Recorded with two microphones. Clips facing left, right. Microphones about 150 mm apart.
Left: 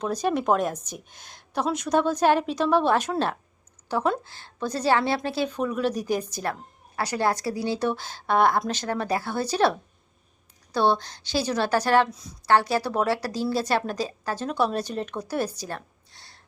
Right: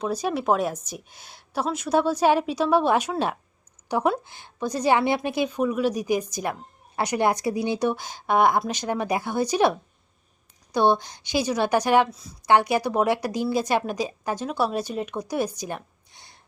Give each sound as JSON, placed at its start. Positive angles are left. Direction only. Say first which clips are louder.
{"t": 0.0, "sound": "a woman's voice", "louder": "left 1 dB", "side_deg": -5}
{"t": 12.1, "sound": "a woman's voice", "louder": "left 1 dB", "side_deg": 0}
{"t": 12.5, "sound": "a woman's voice", "louder": "right 2 dB", "side_deg": -15}